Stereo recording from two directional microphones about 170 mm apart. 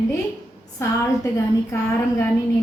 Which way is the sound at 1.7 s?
15° left (ahead or behind).